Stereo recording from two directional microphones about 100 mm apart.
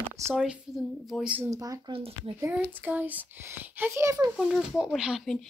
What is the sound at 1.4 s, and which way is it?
Speech, 35° right (ahead or behind).